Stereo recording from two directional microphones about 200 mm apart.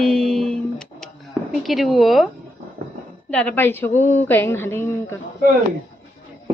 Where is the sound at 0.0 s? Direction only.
Centre (ahead or behind).